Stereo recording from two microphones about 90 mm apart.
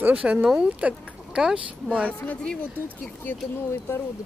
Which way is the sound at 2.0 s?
15° left (ahead or behind).